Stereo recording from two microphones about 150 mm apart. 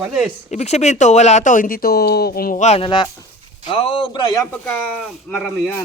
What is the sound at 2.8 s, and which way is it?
A woman's voice, 30° left (ahead or behind).